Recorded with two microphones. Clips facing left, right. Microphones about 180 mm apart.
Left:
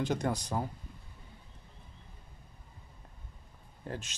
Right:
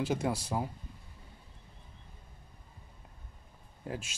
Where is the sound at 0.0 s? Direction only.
5° right (ahead or behind).